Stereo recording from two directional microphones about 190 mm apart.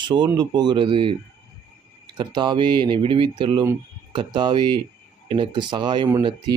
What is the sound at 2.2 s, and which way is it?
Speech, 25° right (ahead or behind).